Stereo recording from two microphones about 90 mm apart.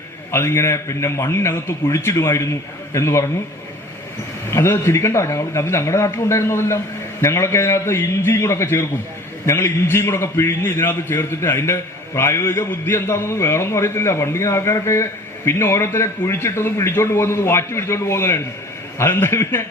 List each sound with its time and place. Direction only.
0.3 s a man's voice: 30° left (ahead or behind)
4.5 s a man's voice: 30° left (ahead or behind)